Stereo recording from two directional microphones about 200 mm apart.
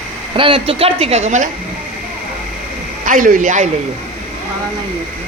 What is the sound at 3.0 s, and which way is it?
Speech, 40° right (ahead or behind).